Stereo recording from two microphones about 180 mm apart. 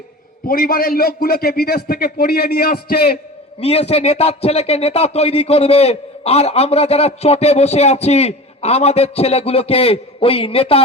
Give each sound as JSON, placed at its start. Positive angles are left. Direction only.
{"t": 0.4, "sound": "a man's voice", "side_deg": 55}
{"t": 3.6, "sound": "a man's voice", "side_deg": 35}